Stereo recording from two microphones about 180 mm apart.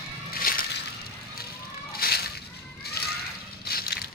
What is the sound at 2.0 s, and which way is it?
Slosh, 60° left (ahead or behind).